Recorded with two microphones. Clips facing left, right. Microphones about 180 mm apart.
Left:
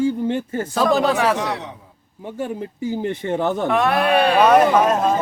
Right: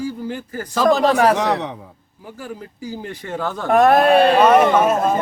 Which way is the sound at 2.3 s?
25° left (ahead or behind).